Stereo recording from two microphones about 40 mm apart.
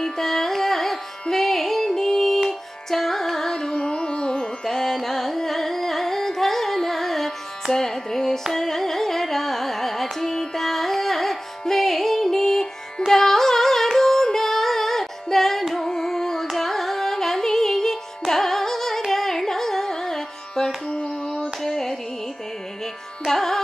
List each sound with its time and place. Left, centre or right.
0.0 s carnatic music: centre
1.3 s music: centre
2.9 s carnatic music: centre
7.7 s music: centre
8.5 s carnatic music: centre
10.1 s music: centre
15.7 s carnatic music: centre
16.5 s music: centre
18.3 s carnatic music: centre
20.9 s a sound: left
21.3 s a sound: centre
23.2 s music: centre